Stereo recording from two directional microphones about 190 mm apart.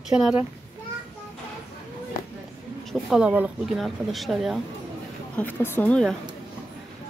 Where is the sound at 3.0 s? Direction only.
5° right (ahead or behind).